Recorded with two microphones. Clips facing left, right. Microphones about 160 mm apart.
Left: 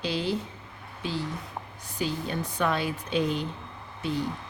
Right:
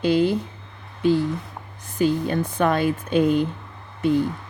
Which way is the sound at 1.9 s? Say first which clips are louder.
Right 9 dB; 50° right (ahead or behind).